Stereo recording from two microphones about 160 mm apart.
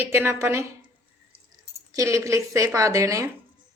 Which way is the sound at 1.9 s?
20° right (ahead or behind).